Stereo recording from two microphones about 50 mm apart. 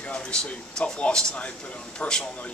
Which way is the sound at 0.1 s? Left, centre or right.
Centre.